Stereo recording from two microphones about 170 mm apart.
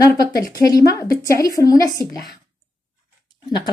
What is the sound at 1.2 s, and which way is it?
Speech, 20° left (ahead or behind).